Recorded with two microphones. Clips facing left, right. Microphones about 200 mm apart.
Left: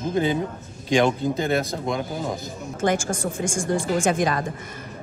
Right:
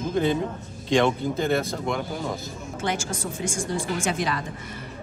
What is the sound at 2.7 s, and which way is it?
A woman's voice, 50° left (ahead or behind).